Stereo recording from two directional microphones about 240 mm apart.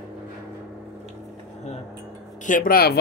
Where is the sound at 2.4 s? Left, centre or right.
Left.